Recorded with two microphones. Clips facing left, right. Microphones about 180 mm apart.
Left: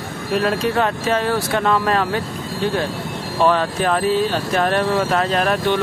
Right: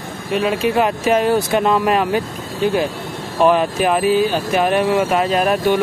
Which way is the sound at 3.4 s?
15° right (ahead or behind).